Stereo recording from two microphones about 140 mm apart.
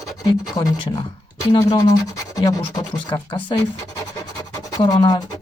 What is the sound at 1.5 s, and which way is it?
Speech, 30° left (ahead or behind).